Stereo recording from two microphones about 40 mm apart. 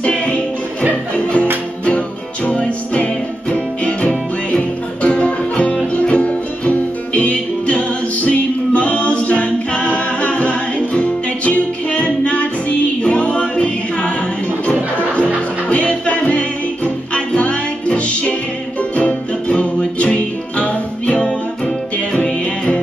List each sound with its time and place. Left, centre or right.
0.0 s music: left